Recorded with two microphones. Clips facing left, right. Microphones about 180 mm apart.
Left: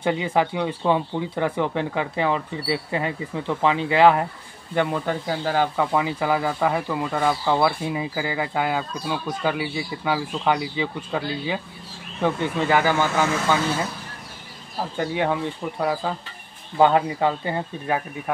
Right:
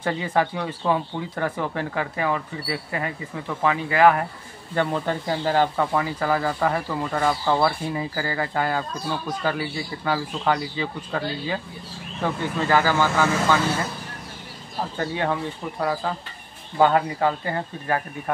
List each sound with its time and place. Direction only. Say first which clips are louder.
0.0 s speech: left 2 dB; 15° left (ahead or behind)
4.7 s speech: left 1 dB; 10° left (ahead or behind)
15.0 s speech: left 2 dB; 15° left (ahead or behind)
17.8 s speech: even; 5° left (ahead or behind)